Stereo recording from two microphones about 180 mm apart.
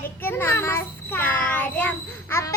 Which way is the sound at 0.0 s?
10° left (ahead or behind).